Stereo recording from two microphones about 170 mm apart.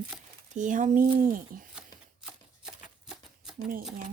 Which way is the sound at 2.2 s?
5° right (ahead or behind).